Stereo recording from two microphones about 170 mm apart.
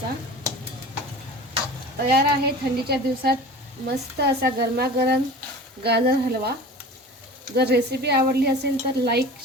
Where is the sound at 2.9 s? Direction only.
65° right (ahead or behind).